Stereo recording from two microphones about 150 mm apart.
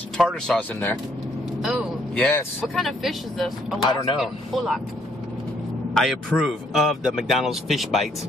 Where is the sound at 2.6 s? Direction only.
Centre (ahead or behind).